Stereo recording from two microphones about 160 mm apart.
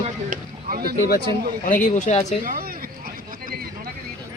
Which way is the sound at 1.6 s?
55° left (ahead or behind).